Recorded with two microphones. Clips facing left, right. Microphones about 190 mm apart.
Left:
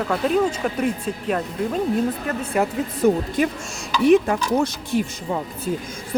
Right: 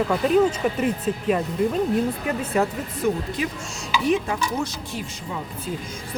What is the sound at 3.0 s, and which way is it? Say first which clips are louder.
Speech: left 5 dB; 45° left (ahead or behind).